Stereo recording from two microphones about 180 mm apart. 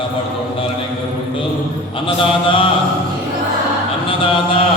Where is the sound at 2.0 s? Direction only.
30° left (ahead or behind).